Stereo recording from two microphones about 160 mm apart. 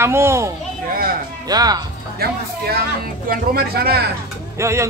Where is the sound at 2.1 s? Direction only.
75° right (ahead or behind).